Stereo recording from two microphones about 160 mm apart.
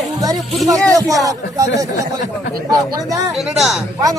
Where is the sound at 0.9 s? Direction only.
20° right (ahead or behind).